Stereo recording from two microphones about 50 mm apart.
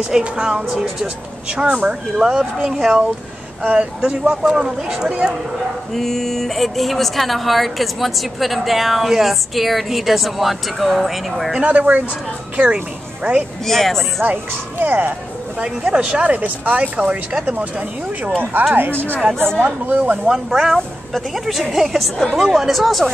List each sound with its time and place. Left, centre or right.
0.2 s speech: centre
3.6 s speech: right
4.3 s speech: centre
5.9 s a woman's voice: centre
11.6 s speech: right
13.2 s speech: right
13.7 s a woman's voice: centre
14.2 s speech: right
15.9 s speech: right
18.8 s speech: right
19.6 s speech: right
20.2 s a woman's voice: centre